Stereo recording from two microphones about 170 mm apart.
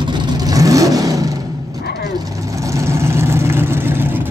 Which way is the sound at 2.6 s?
20° right (ahead or behind).